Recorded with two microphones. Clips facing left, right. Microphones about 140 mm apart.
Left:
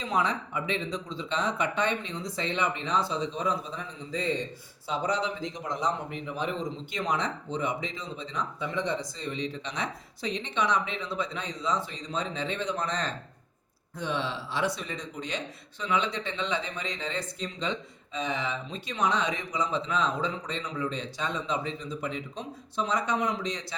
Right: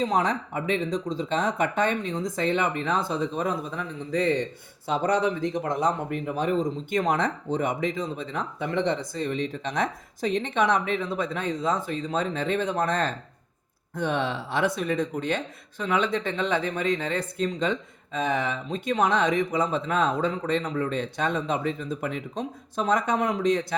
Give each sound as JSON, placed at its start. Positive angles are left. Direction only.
{"t": 0.0, "sound": "speech", "side_deg": -45}